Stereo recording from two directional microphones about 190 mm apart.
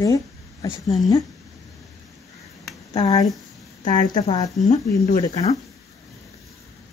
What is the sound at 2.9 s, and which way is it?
Speech, 20° left (ahead or behind).